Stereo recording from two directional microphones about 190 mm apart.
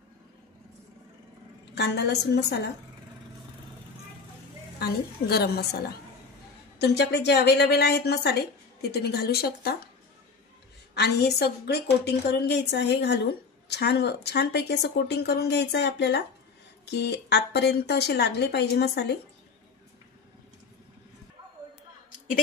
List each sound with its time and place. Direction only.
1.8 s a woman's voice: 60° left (ahead or behind)
4.7 s a woman's voice: 55° left (ahead or behind)
6.8 s a woman's voice: 60° left (ahead or behind)
11.0 s a woman's voice: 60° left (ahead or behind)